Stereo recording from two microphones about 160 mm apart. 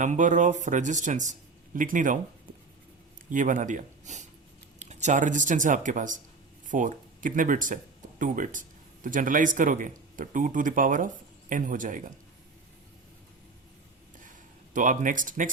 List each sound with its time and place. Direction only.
0.0 s speech: 50° right (ahead or behind)
3.3 s a man's voice: 55° right (ahead or behind)
14.2 s a sound: 55° right (ahead or behind)